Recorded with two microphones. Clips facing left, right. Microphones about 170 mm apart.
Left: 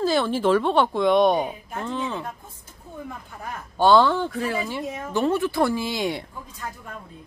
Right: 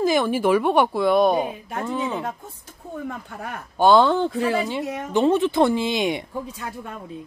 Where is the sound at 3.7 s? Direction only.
15° right (ahead or behind).